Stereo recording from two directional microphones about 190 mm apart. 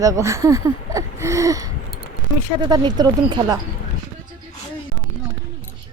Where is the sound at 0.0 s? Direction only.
15° right (ahead or behind).